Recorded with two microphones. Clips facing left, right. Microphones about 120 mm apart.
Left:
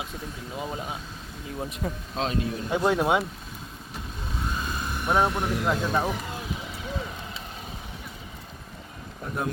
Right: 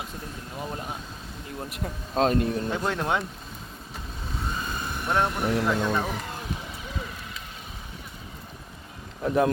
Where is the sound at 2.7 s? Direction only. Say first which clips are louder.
Left 4 dB; 10° left (ahead or behind).